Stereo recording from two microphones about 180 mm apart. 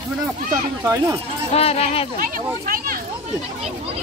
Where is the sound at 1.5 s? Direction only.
35° left (ahead or behind).